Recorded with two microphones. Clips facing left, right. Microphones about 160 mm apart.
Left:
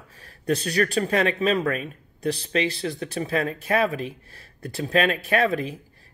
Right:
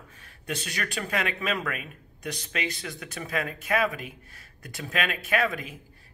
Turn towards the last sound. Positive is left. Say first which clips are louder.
# left 5 dB
turn(degrees=35)  # may be behind; listen again after turning